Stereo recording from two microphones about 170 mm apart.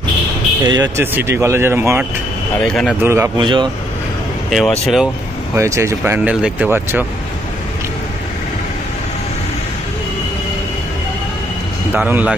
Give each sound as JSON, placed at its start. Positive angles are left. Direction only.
{"t": 0.7, "sound": "speech", "side_deg": -20}
{"t": 2.6, "sound": "speech", "side_deg": 0}
{"t": 3.0, "sound": "speech", "side_deg": -15}
{"t": 3.3, "sound": "speech", "side_deg": -30}
{"t": 4.5, "sound": "speech", "side_deg": 0}
{"t": 5.6, "sound": "speech", "side_deg": -15}
{"t": 11.9, "sound": "speech", "side_deg": -10}